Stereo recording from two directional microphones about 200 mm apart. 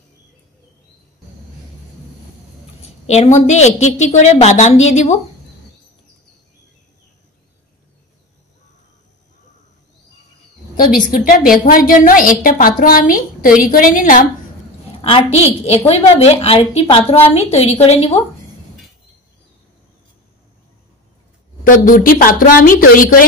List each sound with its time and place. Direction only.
2.8 s a woman's voice: 35° left (ahead or behind)
11.0 s a woman's voice: 45° left (ahead or behind)
15.0 s a woman's voice: 25° left (ahead or behind)
21.6 s a woman's voice: 45° left (ahead or behind)